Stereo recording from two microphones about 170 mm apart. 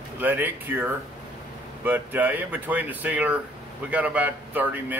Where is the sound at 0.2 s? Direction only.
10° right (ahead or behind).